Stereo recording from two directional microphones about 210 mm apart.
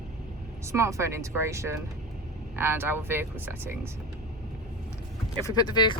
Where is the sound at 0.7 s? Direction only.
15° right (ahead or behind).